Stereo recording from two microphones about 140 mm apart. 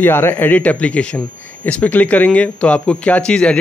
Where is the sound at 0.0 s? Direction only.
15° left (ahead or behind).